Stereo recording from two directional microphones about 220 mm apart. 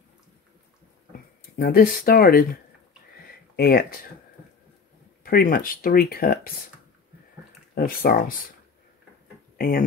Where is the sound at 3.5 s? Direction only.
45° left (ahead or behind).